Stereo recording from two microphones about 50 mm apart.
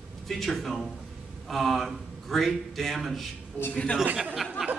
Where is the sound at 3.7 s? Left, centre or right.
Left.